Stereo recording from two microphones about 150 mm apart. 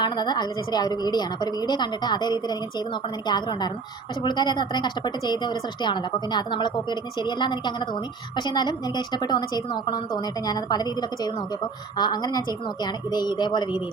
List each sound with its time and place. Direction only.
0.0 s a woman's voice: 30° left (ahead or behind)